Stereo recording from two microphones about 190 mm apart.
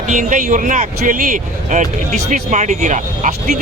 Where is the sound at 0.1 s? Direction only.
45° right (ahead or behind).